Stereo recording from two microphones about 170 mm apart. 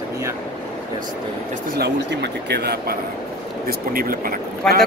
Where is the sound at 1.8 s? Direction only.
80° right; by 4.7 s 55° right (ahead or behind).